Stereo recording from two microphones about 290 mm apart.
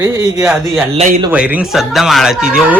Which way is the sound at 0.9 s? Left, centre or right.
Right.